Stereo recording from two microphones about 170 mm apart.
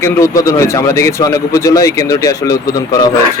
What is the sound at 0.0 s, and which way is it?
A man's voice, 20° left (ahead or behind).